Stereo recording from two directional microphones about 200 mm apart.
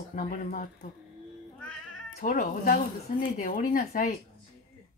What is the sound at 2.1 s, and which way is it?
Speech, 40° left (ahead or behind).